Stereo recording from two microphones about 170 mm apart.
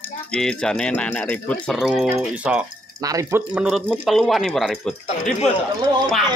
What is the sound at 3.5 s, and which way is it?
Speech, 5° right (ahead or behind).